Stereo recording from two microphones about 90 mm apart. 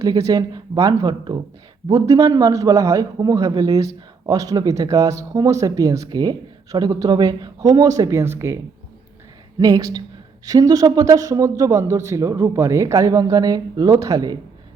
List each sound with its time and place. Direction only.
0.0 s a man's voice: 45° right (ahead or behind)
6.1 s speech: 50° right (ahead or behind)
8.2 s speech: 30° right (ahead or behind)
9.6 s a man's voice: 45° right (ahead or behind)